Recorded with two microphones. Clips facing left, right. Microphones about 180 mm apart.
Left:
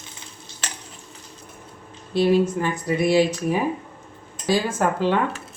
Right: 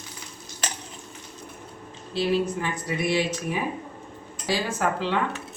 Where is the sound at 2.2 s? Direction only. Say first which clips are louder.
Left 6 dB; 45° left (ahead or behind).